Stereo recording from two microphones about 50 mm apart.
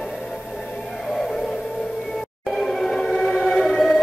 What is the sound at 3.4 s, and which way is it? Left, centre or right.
Music, centre.